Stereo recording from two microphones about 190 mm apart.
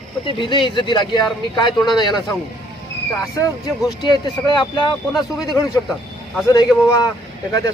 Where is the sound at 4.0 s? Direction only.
20° left (ahead or behind).